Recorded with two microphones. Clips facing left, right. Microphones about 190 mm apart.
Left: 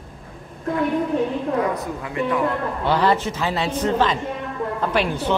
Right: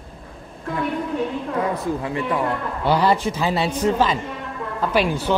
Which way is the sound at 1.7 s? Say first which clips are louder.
Right 2 dB; 30° right (ahead or behind).